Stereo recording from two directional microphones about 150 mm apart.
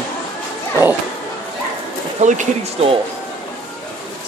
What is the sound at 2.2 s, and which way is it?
Speech, 50° right (ahead or behind).